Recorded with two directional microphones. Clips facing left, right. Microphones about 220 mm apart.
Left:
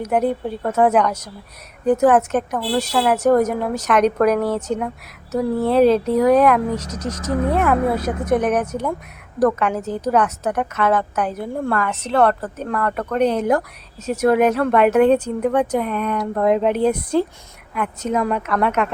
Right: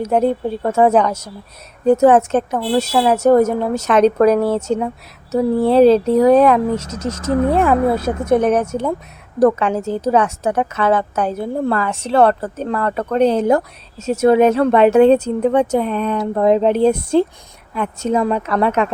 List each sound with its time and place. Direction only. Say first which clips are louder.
0.0 s speech: right 3 dB; 25° right (ahead or behind)